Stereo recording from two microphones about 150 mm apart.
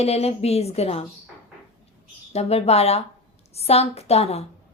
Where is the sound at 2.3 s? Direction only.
45° left (ahead or behind).